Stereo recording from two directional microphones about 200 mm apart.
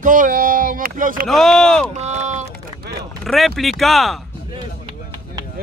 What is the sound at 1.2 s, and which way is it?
Speech, centre (ahead or behind).